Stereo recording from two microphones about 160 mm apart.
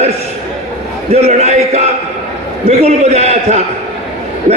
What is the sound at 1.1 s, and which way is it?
A man's voice, 40° right (ahead or behind).